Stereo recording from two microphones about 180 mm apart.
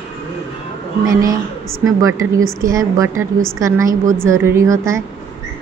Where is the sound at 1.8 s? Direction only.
15° right (ahead or behind).